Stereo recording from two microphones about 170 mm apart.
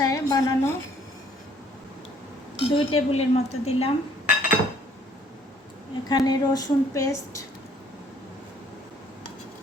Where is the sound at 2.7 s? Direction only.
35° left (ahead or behind).